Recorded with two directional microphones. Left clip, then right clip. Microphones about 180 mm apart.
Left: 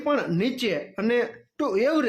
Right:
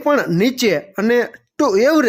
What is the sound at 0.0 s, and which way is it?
Speech, 35° right (ahead or behind).